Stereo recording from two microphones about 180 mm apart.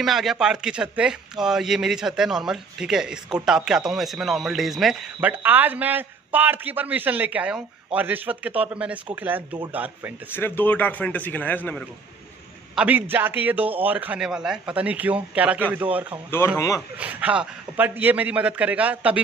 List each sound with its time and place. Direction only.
0.0 s a man's voice: centre (ahead or behind)
10.3 s a man's voice: 10° left (ahead or behind)
12.7 s speech: 10° right (ahead or behind)
16.5 s a man's voice: 20° left (ahead or behind)
17.0 s speech: 5° right (ahead or behind)